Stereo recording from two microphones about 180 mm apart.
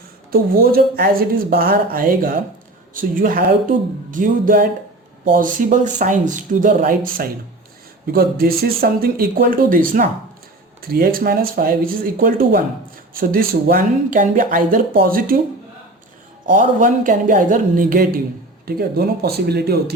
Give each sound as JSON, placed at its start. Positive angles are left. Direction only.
{"t": 0.3, "sound": "speech", "side_deg": -55}
{"t": 16.5, "sound": "speech", "side_deg": -50}